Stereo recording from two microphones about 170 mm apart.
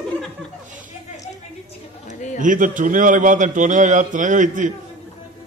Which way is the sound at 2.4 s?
50° right (ahead or behind).